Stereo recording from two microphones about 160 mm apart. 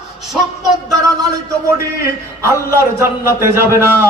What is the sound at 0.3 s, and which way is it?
Speech, 5° right (ahead or behind).